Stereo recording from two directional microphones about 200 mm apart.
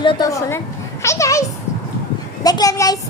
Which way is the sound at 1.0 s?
15° left (ahead or behind).